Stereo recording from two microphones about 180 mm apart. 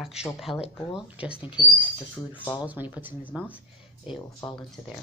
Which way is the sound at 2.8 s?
10° right (ahead or behind).